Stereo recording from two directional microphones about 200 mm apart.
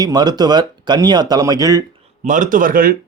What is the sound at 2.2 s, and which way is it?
Speech, 40° right (ahead or behind).